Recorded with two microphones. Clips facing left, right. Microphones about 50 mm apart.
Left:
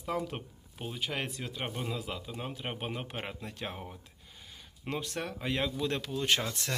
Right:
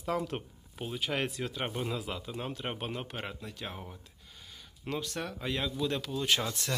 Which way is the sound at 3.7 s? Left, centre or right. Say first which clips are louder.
Left 1 dB; centre.